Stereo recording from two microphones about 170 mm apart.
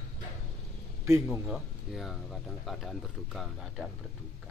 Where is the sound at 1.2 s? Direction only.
Centre (ahead or behind).